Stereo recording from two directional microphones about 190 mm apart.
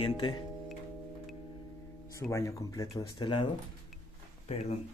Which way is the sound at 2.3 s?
15° left (ahead or behind).